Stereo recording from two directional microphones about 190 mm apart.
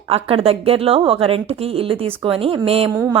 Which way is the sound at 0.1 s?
30° right (ahead or behind).